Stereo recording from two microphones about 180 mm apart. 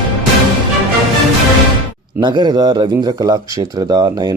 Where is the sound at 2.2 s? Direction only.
25° right (ahead or behind).